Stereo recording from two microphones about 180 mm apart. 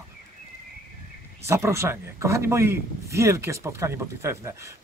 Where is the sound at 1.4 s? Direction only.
15° right (ahead or behind).